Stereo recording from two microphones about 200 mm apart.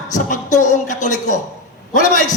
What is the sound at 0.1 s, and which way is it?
A woman's voice, 40° left (ahead or behind).